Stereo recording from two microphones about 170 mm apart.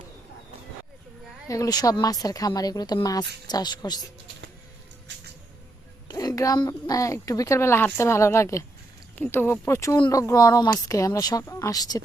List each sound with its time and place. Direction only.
1.5 s speech: 20° left (ahead or behind)
5.1 s a sound: 90° right
6.1 s a woman's voice: 20° left (ahead or behind)